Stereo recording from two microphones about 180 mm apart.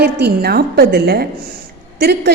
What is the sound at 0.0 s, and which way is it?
A woman's voice, 65° right (ahead or behind).